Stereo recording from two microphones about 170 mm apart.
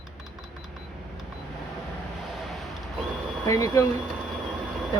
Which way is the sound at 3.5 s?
20° left (ahead or behind).